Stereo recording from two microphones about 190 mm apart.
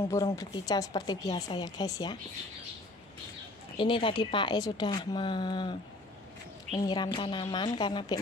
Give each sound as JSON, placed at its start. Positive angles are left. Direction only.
{"t": 0.4, "sound": "speech", "side_deg": 20}
{"t": 3.7, "sound": "speech", "side_deg": 25}